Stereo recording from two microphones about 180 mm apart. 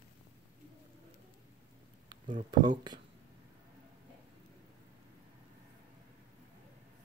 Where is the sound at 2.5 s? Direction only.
25° right (ahead or behind).